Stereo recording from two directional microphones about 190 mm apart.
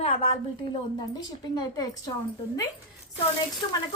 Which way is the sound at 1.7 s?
20° left (ahead or behind).